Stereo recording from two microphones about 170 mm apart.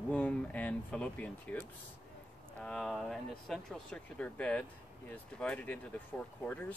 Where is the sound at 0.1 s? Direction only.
10° left (ahead or behind).